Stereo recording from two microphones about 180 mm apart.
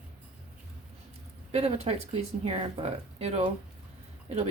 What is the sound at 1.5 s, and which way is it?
Speech, 35° right (ahead or behind).